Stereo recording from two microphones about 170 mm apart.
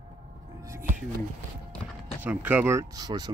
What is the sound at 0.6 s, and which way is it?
Music, 15° right (ahead or behind).